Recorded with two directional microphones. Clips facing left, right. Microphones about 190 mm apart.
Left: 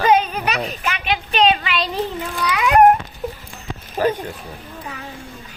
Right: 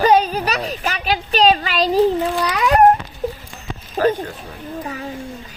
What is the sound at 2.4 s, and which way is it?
Babbling, 40° right (ahead or behind).